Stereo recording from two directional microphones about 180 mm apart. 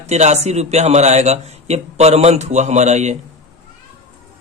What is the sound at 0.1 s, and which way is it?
A man's voice, 40° right (ahead or behind).